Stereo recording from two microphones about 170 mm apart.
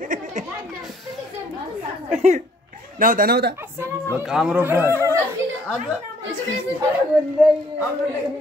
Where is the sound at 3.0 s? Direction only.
55° right (ahead or behind).